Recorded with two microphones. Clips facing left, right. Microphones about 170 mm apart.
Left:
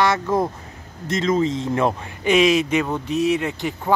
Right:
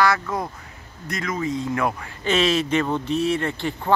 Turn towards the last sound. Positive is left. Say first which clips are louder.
# left 1 dB
turn(degrees=10)  # may be behind; listen again after turning